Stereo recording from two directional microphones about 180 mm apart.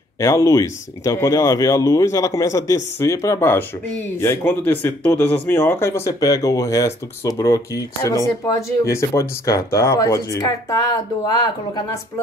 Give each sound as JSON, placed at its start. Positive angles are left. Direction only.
{"t": 0.2, "sound": "speech", "side_deg": 20}